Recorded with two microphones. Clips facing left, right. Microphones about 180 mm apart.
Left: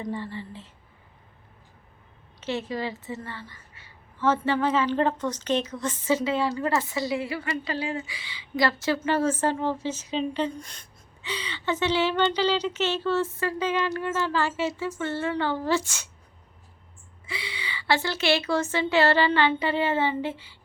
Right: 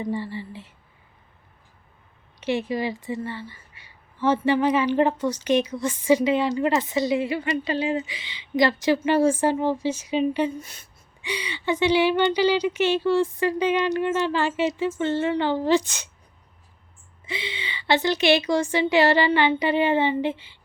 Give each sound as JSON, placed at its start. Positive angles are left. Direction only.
{"t": 0.0, "sound": "a woman's voice", "side_deg": -10}
{"t": 2.4, "sound": "a woman's voice", "side_deg": -15}
{"t": 17.2, "sound": "a woman's voice", "side_deg": -20}